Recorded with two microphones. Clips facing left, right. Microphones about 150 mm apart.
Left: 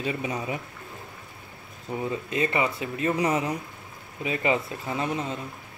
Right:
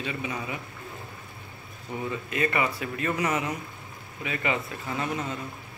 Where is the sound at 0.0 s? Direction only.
40° left (ahead or behind).